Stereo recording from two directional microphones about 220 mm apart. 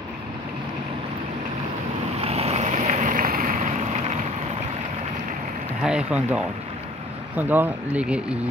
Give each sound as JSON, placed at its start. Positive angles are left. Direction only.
{"t": 2.2, "sound": "boat", "side_deg": -30}
{"t": 5.8, "sound": "speech", "side_deg": -5}